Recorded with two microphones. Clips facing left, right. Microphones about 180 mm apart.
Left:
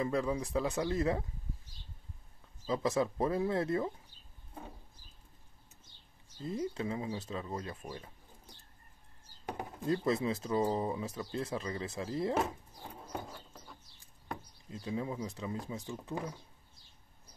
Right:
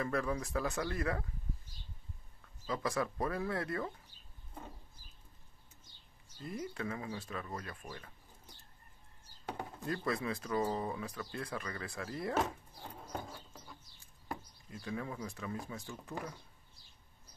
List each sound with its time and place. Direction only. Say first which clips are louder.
0.0 s speech: left 3 dB; 20° left (ahead or behind)
2.6 s speech: left 4 dB; 25° left (ahead or behind)
6.4 s speech: left 4 dB; 25° left (ahead or behind)
9.5 s speech: left 5 dB; 15° left (ahead or behind)
14.7 s speech: left 4 dB; 20° left (ahead or behind)